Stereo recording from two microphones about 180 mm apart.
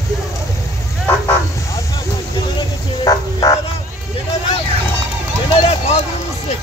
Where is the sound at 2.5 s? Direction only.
20° left (ahead or behind).